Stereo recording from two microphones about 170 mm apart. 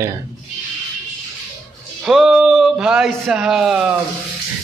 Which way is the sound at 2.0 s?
Centre (ahead or behind).